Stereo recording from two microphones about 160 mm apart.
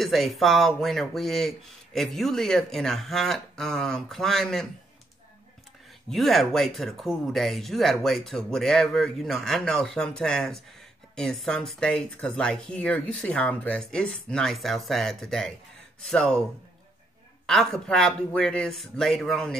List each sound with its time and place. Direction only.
0.0 s speech: centre (ahead or behind)
6.0 s speech: centre (ahead or behind)
17.5 s speech: centre (ahead or behind)